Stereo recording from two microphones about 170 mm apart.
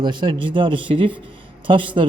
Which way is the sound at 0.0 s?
30° right (ahead or behind).